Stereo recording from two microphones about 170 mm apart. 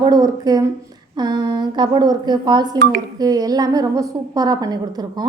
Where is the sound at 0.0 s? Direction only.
20° right (ahead or behind).